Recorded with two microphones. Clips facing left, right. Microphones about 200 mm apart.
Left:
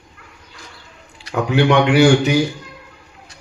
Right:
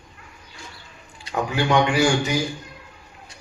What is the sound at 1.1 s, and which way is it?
Speech, 70° left (ahead or behind).